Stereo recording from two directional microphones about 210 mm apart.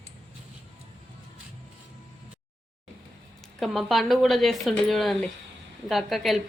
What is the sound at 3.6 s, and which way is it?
Speech, centre (ahead or behind).